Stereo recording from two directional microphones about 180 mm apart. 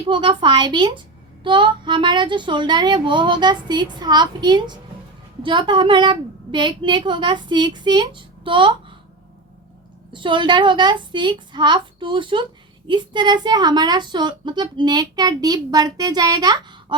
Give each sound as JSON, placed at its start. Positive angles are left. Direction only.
{"t": 0.1, "sound": "speech", "side_deg": -25}
{"t": 10.1, "sound": "speech", "side_deg": -25}